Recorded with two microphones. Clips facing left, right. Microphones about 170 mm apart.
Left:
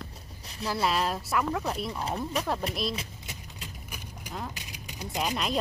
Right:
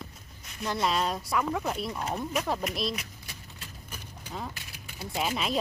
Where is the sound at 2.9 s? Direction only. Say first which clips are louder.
Left 2 dB; 20° left (ahead or behind).